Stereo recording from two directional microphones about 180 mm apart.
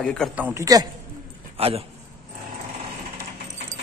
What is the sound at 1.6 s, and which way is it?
Speech, 35° right (ahead or behind).